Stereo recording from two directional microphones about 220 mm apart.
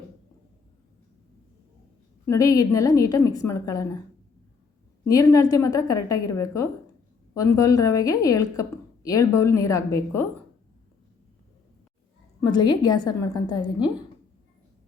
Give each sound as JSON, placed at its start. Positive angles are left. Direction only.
{"t": 2.2, "sound": "a woman's voice", "side_deg": 15}
{"t": 5.0, "sound": "a woman's voice", "side_deg": 15}
{"t": 12.4, "sound": "a woman's voice", "side_deg": 20}